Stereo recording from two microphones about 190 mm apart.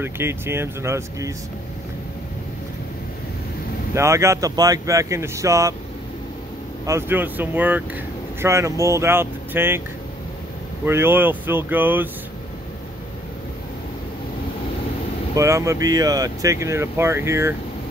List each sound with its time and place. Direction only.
0.0 s speech: 15° right (ahead or behind)
3.9 s speech: 15° right (ahead or behind)
6.9 s speech: 10° right (ahead or behind)
10.9 s speech: 10° right (ahead or behind)
15.3 s speech: 15° right (ahead or behind)